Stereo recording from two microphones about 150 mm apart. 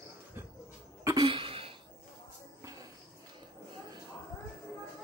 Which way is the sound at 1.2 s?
35° right (ahead or behind).